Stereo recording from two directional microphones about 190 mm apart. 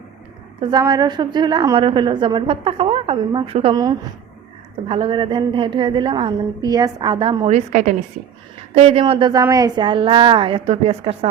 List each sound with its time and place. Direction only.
0.6 s a woman's voice: 20° right (ahead or behind)